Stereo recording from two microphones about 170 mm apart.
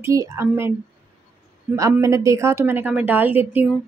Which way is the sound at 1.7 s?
20° right (ahead or behind).